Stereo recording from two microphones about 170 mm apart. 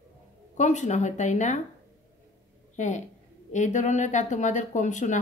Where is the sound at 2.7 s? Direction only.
45° left (ahead or behind).